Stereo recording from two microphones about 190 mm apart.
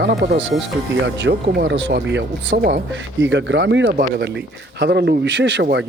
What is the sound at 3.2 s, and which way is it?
Speech, 70° right (ahead or behind).